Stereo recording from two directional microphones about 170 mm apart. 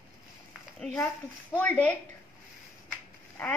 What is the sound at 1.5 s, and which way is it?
Speech, 10° left (ahead or behind).